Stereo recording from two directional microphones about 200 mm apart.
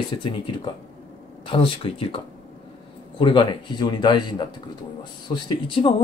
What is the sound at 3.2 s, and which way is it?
Speech, 25° left (ahead or behind).